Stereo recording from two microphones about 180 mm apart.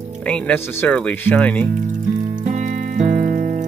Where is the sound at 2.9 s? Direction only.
45° right (ahead or behind).